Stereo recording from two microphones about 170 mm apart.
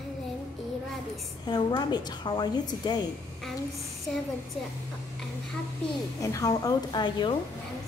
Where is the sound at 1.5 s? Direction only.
25° left (ahead or behind).